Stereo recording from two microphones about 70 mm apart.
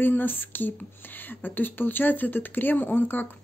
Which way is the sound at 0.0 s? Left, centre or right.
Left.